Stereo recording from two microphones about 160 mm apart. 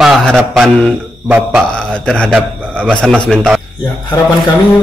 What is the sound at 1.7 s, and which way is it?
A man's voice, 5° left (ahead or behind).